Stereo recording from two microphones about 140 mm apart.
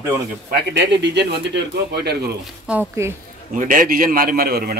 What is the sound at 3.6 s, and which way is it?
A man's voice, 70° right (ahead or behind).